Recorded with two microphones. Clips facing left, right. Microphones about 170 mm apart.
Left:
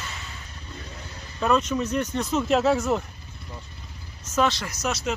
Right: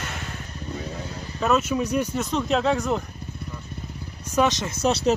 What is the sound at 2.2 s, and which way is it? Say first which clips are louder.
Speech: left 5 dB; 5° left (ahead or behind).